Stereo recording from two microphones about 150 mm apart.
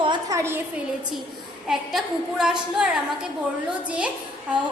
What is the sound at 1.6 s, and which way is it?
A woman's voice, 5° right (ahead or behind).